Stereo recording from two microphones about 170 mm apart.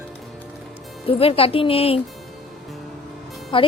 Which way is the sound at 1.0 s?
35° left (ahead or behind).